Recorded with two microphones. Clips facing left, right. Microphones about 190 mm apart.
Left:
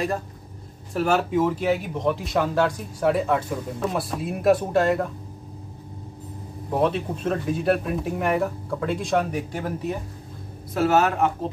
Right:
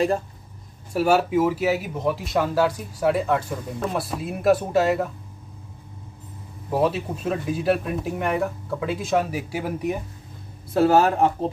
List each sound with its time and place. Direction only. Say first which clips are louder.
0.9 s speech: right 2 dB; 5° right (ahead or behind)
6.7 s speech: even; 5° right (ahead or behind)
10.7 s speech: right 3 dB; 30° right (ahead or behind)